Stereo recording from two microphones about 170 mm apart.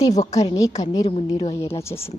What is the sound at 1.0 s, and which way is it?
Speech, 35° left (ahead or behind).